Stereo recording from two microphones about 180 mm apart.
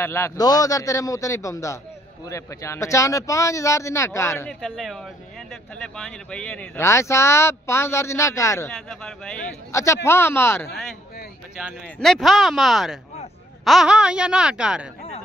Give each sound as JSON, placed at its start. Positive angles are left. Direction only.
{"t": 0.0, "sound": "speech", "side_deg": 15}
{"t": 4.5, "sound": "speech", "side_deg": 0}
{"t": 6.8, "sound": "speech", "side_deg": 15}
{"t": 8.8, "sound": "speech", "side_deg": 5}
{"t": 9.7, "sound": "speech", "side_deg": 15}
{"t": 11.5, "sound": "speech", "side_deg": 0}